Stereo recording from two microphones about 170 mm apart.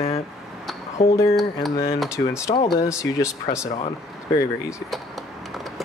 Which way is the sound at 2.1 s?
15° left (ahead or behind).